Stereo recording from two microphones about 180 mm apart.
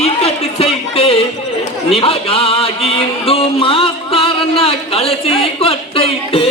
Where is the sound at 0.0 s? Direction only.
35° left (ahead or behind).